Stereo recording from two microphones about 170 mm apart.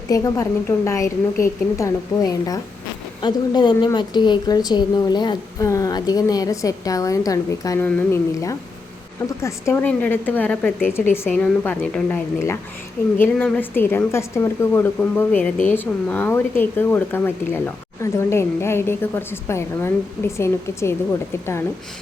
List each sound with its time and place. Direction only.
0.1 s a woman's voice: 20° left (ahead or behind)